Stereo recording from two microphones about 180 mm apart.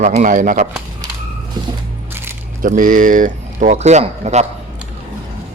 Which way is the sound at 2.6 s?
50° right (ahead or behind).